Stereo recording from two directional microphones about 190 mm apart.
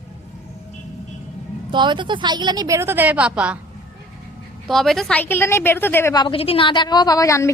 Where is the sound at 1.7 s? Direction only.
25° right (ahead or behind); by 3.6 s 5° right (ahead or behind).